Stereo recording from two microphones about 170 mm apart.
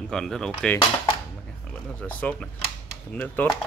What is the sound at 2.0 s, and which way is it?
Speech, 10° left (ahead or behind).